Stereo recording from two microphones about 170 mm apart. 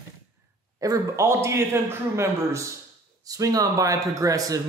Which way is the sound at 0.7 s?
20° right (ahead or behind).